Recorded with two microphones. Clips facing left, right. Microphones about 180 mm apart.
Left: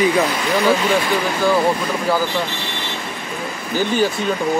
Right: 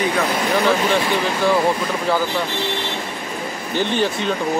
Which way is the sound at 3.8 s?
5° left (ahead or behind).